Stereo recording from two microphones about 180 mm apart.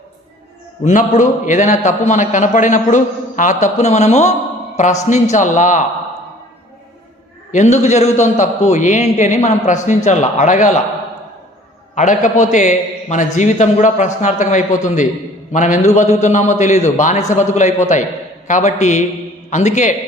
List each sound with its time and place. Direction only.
0.9 s a man's voice: 45° left (ahead or behind)
7.5 s a man's voice: 40° left (ahead or behind)
11.9 s a man's voice: 45° left (ahead or behind)